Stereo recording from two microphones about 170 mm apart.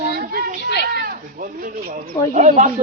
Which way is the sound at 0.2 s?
60° right (ahead or behind).